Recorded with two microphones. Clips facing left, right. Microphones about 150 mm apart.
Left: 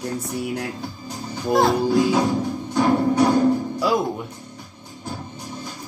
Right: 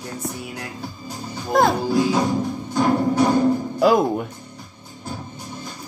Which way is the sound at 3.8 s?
50° right (ahead or behind).